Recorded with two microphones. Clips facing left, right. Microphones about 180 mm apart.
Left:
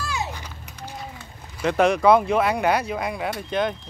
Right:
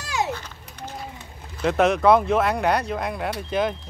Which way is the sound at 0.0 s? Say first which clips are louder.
Right 3 dB; 90° right.